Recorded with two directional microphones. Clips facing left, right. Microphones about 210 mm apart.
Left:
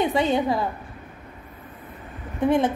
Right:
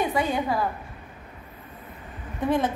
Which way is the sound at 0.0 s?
25° left (ahead or behind).